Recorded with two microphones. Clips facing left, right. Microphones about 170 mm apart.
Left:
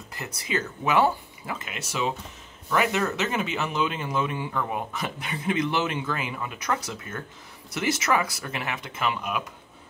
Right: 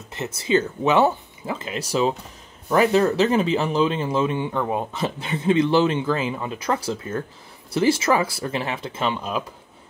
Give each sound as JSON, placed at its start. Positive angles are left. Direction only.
{"t": 0.1, "sound": "speech", "side_deg": -25}